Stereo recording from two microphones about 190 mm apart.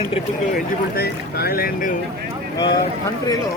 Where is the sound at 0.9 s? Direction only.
55° left (ahead or behind).